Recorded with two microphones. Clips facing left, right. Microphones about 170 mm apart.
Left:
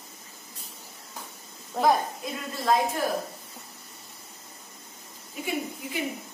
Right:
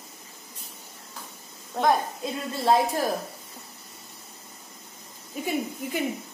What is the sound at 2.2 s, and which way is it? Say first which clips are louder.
Speech: right 3 dB; 25° right (ahead or behind).